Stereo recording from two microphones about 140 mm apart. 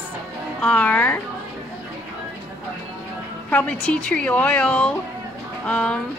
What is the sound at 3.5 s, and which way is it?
A woman's voice, 10° left (ahead or behind).